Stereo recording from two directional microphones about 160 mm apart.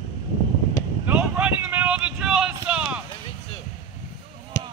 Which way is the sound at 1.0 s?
10° right (ahead or behind).